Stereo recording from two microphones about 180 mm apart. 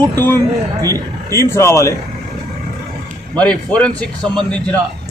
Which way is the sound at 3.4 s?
5° left (ahead or behind).